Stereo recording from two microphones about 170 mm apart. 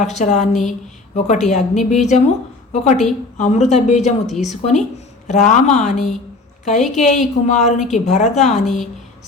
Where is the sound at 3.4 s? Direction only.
40° left (ahead or behind).